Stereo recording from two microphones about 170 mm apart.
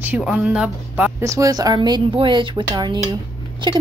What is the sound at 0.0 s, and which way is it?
A woman's voice, 5° right (ahead or behind).